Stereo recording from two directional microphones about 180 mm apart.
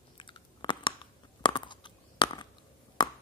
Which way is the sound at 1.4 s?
25° left (ahead or behind).